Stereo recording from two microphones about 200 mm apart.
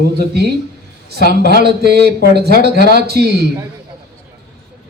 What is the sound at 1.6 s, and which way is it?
Speech, 55° right (ahead or behind).